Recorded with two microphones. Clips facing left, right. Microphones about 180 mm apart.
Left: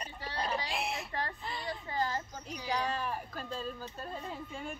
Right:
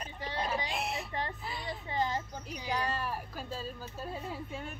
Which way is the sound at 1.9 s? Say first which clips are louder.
Right 2 dB; 20° right (ahead or behind).